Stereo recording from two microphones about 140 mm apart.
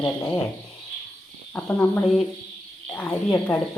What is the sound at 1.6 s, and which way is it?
Speech, 15° left (ahead or behind).